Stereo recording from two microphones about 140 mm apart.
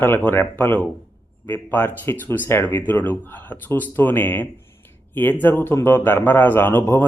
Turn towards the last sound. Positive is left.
turn(degrees=15)  # may be behind; listen again after turning